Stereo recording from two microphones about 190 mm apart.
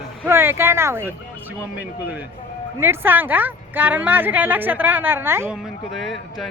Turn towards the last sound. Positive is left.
turn(degrees=0)  # may be behind; listen again after turning